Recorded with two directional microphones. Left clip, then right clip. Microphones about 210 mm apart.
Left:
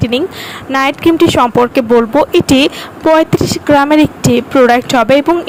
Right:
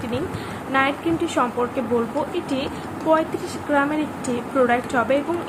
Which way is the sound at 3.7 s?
50° left (ahead or behind).